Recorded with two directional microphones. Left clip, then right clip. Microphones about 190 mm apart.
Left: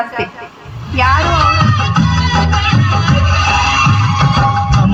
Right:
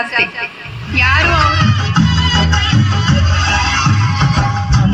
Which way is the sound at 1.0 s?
25° right (ahead or behind).